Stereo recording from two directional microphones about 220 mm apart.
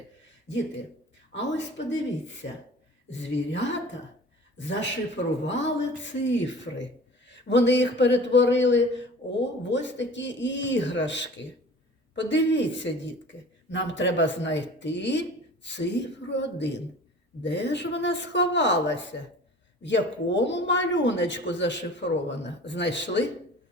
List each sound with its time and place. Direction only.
1.3 s speech: 55° left (ahead or behind)